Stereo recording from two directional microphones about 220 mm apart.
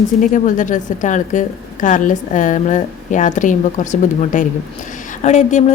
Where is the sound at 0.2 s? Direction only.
35° left (ahead or behind).